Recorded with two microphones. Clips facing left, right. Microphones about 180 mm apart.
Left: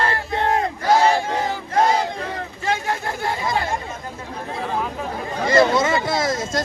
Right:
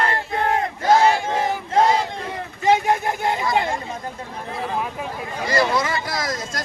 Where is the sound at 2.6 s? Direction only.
20° right (ahead or behind).